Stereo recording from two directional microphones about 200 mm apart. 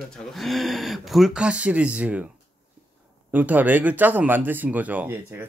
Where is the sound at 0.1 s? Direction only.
Centre (ahead or behind).